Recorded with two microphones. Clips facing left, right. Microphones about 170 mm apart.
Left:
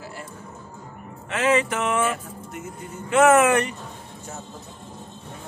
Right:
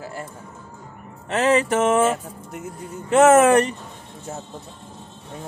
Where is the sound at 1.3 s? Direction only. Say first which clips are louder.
Right 3 dB; 35° right (ahead or behind).